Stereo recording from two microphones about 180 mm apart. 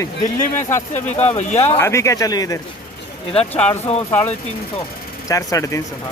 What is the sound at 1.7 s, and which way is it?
Speech, 15° left (ahead or behind).